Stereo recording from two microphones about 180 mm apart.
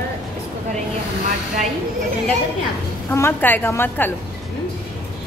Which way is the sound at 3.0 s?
10° left (ahead or behind).